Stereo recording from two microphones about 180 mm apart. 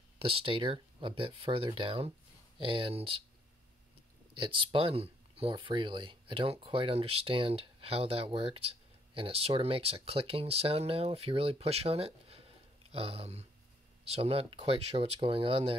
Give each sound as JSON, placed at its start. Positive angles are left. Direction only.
{"t": 0.2, "sound": "speech", "side_deg": -30}
{"t": 4.3, "sound": "speech", "side_deg": -30}